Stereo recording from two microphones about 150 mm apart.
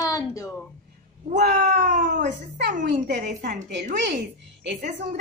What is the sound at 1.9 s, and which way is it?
Speech, 55° right (ahead or behind).